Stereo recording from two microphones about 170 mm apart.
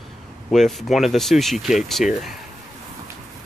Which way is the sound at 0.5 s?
Centre (ahead or behind).